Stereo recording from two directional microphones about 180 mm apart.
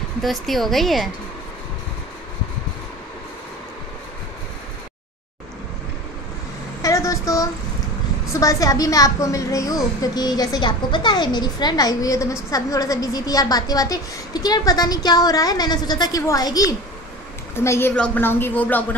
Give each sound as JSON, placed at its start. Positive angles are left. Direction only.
{"t": 0.2, "sound": "a woman's voice", "side_deg": 0}
{"t": 6.8, "sound": "vehicle", "side_deg": 15}
{"t": 8.3, "sound": "a woman's voice", "side_deg": 20}